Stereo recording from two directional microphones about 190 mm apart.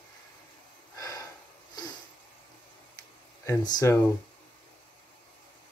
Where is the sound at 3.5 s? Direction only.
15° left (ahead or behind).